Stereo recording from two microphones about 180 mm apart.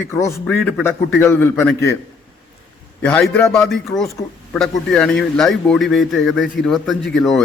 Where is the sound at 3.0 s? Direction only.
5° left (ahead or behind).